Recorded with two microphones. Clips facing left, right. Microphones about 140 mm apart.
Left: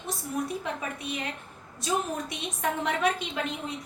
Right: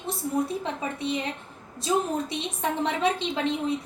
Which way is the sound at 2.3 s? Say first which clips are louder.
Right 2 dB; 30° right (ahead or behind).